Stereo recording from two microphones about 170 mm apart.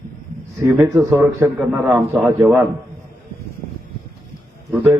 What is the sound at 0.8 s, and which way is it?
A man's voice, 20° right (ahead or behind).